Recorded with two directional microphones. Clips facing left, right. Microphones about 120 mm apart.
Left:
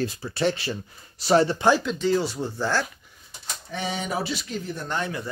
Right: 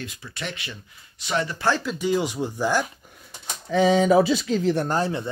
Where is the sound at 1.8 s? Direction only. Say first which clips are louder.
Even; 10° right (ahead or behind).